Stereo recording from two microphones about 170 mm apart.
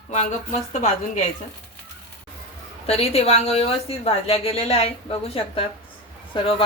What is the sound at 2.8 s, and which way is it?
A woman's voice, 35° left (ahead or behind).